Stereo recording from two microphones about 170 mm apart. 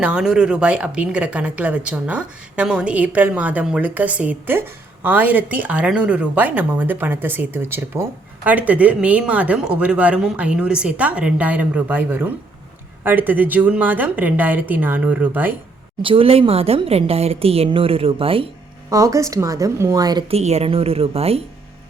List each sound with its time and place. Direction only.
0.0 s a woman's voice: 5° right (ahead or behind)
16.0 s a woman's voice: 30° right (ahead or behind)
18.9 s speech: 20° right (ahead or behind)
20.3 s a woman's voice: 40° right (ahead or behind)